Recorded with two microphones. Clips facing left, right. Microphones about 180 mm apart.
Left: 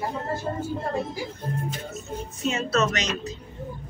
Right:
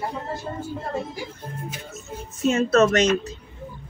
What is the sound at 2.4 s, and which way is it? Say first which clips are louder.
Speech: right 7 dB; 50° right (ahead or behind).